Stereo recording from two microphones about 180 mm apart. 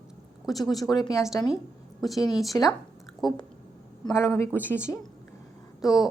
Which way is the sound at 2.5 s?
15° left (ahead or behind).